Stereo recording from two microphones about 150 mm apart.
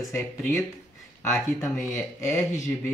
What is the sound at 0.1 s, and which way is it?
Speech, 15° left (ahead or behind).